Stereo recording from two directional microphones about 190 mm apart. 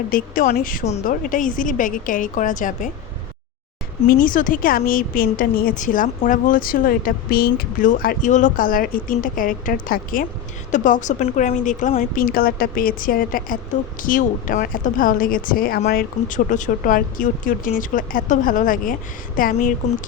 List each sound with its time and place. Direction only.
0.1 s a woman's voice: 50° left (ahead or behind)
4.2 s a woman's voice: 45° left (ahead or behind)